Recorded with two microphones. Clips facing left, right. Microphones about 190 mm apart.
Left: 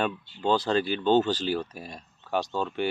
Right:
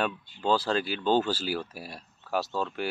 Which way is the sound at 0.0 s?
5° right (ahead or behind).